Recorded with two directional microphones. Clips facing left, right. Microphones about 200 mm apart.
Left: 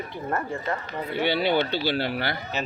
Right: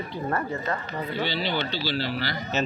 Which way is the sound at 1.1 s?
60° left (ahead or behind).